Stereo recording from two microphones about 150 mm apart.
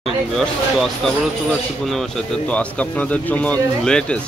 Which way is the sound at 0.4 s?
Centre (ahead or behind).